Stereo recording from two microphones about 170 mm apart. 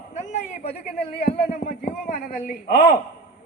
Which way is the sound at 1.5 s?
60° left (ahead or behind).